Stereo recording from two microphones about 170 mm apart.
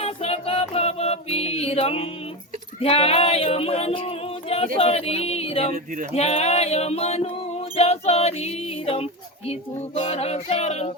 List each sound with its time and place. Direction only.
0.0 s music: 35° left (ahead or behind)
2.8 s a sound: 35° left (ahead or behind)
4.8 s child singing: 35° left (ahead or behind)